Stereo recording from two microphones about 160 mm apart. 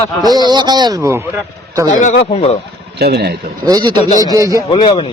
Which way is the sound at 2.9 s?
90° right.